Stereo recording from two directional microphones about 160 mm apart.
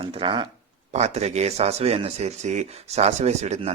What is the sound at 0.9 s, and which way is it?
Speech, 45° right (ahead or behind).